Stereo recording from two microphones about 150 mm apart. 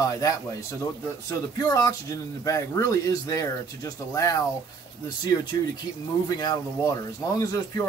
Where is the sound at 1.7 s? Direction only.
20° left (ahead or behind).